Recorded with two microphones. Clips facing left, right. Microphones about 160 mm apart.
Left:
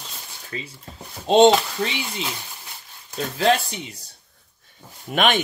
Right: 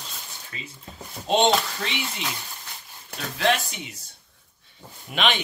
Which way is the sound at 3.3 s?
35° left (ahead or behind).